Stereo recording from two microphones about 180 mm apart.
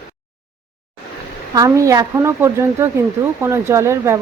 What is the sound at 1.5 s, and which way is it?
A woman's voice, 20° right (ahead or behind).